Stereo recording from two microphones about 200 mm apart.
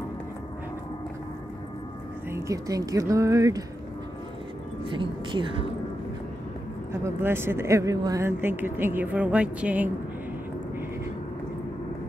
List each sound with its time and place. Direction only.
2.3 s speech: 15° right (ahead or behind)
4.8 s a woman's voice: 25° right (ahead or behind)
6.9 s speech: 10° right (ahead or behind)